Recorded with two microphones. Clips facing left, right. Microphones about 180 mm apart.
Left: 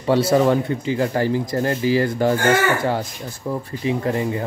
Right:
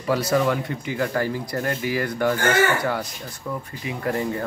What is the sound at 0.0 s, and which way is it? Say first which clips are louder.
Speech: left 5 dB; 30° left (ahead or behind).